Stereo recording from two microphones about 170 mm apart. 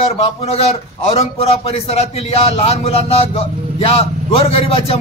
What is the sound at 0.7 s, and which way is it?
Speech, 35° left (ahead or behind).